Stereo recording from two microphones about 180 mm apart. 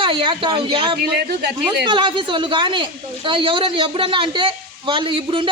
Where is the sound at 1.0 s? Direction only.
65° right (ahead or behind).